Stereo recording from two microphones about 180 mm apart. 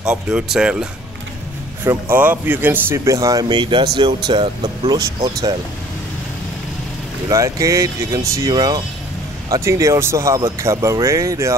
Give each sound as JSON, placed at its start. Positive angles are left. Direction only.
{"t": 0.0, "sound": "speech", "side_deg": -5}
{"t": 1.9, "sound": "speech", "side_deg": -10}
{"t": 7.2, "sound": "speech", "side_deg": -20}